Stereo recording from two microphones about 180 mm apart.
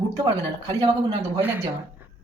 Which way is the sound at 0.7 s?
20° right (ahead or behind).